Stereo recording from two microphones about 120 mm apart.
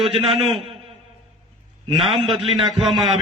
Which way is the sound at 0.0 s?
55° right (ahead or behind).